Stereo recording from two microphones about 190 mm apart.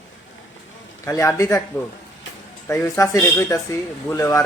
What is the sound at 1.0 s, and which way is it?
Speech, 15° left (ahead or behind).